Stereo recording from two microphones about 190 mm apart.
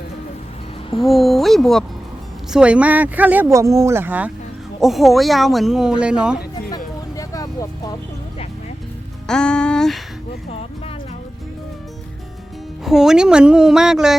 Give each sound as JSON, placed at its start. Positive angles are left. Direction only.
{"t": 0.9, "sound": "speech", "side_deg": 0}
{"t": 7.2, "sound": "vehicle", "side_deg": 20}
{"t": 9.2, "sound": "a sound", "side_deg": 5}
{"t": 12.8, "sound": "speech", "side_deg": 0}